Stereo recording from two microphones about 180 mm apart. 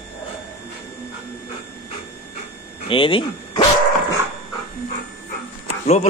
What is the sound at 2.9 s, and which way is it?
Speech, 30° left (ahead or behind).